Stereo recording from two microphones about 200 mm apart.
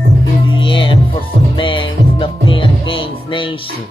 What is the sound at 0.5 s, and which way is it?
Music, 25° left (ahead or behind).